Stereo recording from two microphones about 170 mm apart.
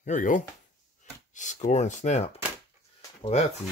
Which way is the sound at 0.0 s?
50° left (ahead or behind).